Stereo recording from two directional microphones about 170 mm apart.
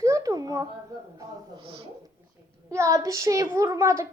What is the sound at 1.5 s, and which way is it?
Speech, 30° right (ahead or behind).